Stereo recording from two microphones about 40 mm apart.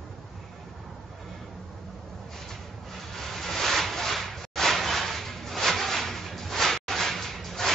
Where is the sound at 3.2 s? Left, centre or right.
Centre.